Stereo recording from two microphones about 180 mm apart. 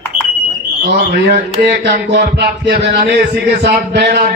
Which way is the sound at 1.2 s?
65° right (ahead or behind).